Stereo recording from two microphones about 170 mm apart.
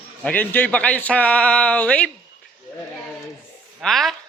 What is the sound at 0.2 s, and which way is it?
A man's voice, 10° left (ahead or behind).